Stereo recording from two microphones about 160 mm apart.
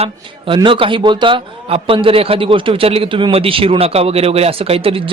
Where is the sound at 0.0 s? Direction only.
30° right (ahead or behind).